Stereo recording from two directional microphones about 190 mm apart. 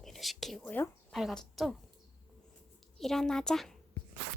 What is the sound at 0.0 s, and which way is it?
Speech, centre (ahead or behind).